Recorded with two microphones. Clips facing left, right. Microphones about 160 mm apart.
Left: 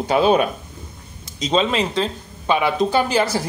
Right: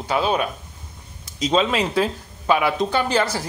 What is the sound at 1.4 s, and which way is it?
Speech, 5° right (ahead or behind).